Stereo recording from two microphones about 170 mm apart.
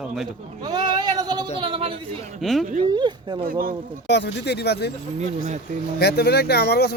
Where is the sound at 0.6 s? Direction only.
25° right (ahead or behind).